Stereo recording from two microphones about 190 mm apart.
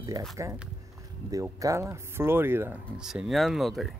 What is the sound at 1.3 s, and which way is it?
Speech, 15° right (ahead or behind).